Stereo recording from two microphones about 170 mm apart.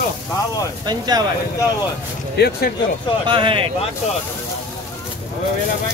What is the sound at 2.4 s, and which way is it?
Speech, 65° left (ahead or behind).